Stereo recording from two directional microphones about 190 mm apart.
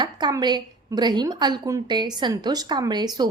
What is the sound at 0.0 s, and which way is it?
A woman's voice, 20° right (ahead or behind).